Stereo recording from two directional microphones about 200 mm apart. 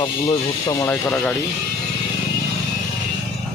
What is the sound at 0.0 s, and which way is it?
Speech, 20° left (ahead or behind).